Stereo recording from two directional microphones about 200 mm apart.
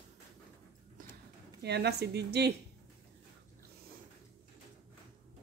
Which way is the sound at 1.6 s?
55° right (ahead or behind).